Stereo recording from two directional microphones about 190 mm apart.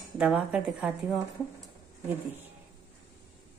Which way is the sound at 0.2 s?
5° right (ahead or behind).